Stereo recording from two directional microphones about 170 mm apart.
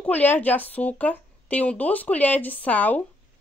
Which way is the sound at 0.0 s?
10° left (ahead or behind).